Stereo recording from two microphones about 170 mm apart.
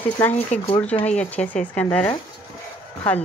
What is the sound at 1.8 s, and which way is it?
Speech, 10° left (ahead or behind).